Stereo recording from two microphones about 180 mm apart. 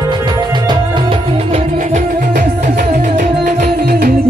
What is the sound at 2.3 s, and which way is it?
Music, 45° right (ahead or behind).